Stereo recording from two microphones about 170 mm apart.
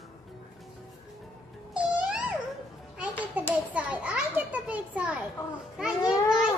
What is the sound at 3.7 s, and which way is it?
A child's voice, 10° right (ahead or behind).